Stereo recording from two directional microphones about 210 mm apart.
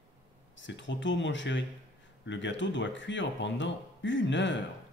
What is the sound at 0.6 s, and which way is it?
Speech, 60° left (ahead or behind).